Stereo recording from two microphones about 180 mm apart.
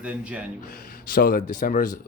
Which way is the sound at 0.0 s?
5° right (ahead or behind).